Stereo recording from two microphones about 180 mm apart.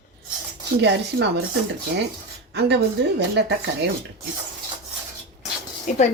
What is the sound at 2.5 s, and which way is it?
A woman's voice, 70° right (ahead or behind).